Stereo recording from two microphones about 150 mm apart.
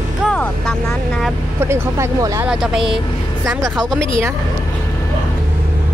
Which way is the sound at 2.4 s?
5° right (ahead or behind).